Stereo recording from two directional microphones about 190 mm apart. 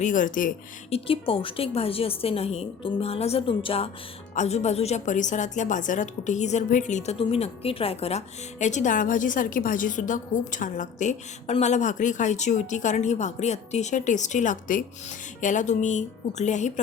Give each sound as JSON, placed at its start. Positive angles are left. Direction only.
{"t": 0.0, "sound": "speech", "side_deg": 45}
{"t": 0.9, "sound": "a woman's voice", "side_deg": 30}